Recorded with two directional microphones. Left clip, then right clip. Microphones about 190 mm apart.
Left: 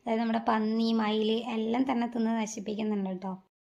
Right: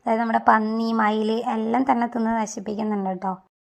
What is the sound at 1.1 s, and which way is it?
Speech, 65° right (ahead or behind).